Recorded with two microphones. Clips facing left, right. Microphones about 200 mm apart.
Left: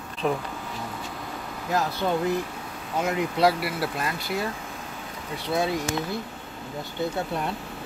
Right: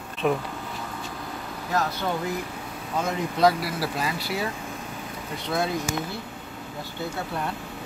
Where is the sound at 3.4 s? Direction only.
5° left (ahead or behind).